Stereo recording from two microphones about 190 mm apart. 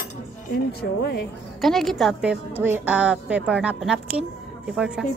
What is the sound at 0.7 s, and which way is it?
Speech, 60° left (ahead or behind).